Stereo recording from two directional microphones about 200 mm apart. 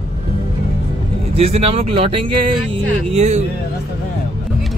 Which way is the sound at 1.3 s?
30° right (ahead or behind).